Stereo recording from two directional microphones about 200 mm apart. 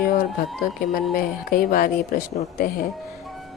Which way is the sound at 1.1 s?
45° left (ahead or behind).